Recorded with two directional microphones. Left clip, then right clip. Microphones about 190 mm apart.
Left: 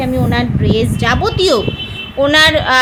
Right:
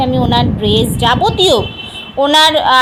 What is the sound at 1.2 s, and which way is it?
Speech, 30° left (ahead or behind).